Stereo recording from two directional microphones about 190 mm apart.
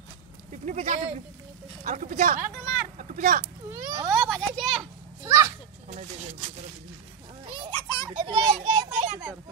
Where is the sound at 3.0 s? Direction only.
45° right (ahead or behind).